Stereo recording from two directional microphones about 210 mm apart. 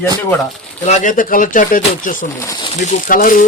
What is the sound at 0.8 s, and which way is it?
Speech, 35° left (ahead or behind).